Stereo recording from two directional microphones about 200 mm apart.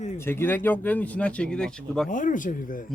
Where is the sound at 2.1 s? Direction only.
40° left (ahead or behind).